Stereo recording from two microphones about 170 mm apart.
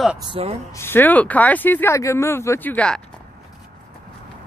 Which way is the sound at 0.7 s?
15° left (ahead or behind).